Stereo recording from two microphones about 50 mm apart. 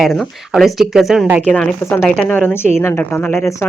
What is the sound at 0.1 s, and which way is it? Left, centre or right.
Speech, centre.